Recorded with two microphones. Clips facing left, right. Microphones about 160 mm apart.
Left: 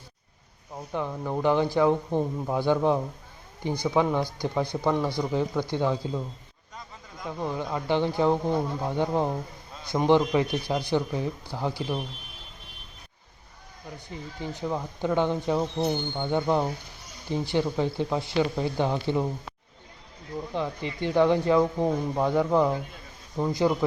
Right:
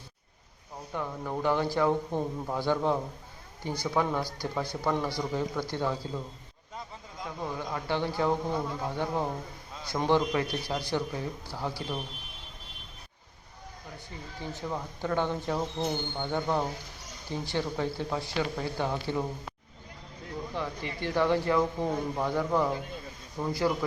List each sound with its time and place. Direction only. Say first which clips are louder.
0.9 s speech: left 4 dB; 15° left (ahead or behind)
7.4 s speech: left 5 dB; 20° left (ahead or behind)
9.8 s speech: left 5 dB; 15° left (ahead or behind)
14.4 s speech: left 4 dB; 15° left (ahead or behind)
20.5 s speech: left 5 dB; 20° left (ahead or behind)